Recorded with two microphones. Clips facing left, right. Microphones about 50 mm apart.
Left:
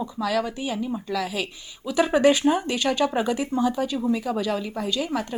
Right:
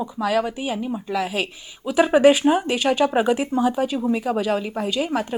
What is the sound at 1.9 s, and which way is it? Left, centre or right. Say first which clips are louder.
A woman's voice: right 4 dB; centre.